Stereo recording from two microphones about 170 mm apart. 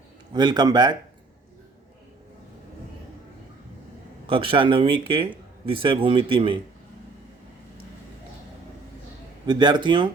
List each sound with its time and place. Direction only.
0.3 s speech: 25° right (ahead or behind)
4.3 s speech: 30° right (ahead or behind)
9.5 s speech: 25° right (ahead or behind)